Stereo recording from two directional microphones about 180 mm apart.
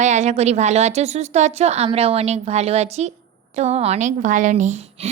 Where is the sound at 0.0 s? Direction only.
40° right (ahead or behind).